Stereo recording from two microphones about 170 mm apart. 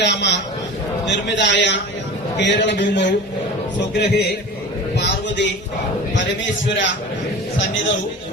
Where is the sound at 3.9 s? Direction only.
75° left (ahead or behind).